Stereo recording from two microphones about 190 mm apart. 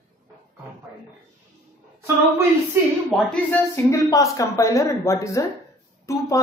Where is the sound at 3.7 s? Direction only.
15° left (ahead or behind).